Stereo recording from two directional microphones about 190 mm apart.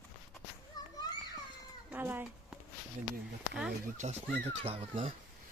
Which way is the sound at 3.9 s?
40° right (ahead or behind).